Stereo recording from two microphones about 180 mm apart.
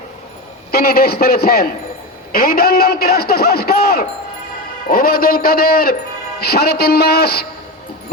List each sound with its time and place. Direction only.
0.7 s a man's voice: 60° left (ahead or behind)